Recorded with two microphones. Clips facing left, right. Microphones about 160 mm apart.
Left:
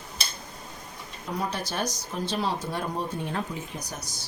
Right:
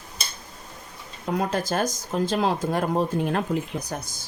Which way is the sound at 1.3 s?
50° right (ahead or behind).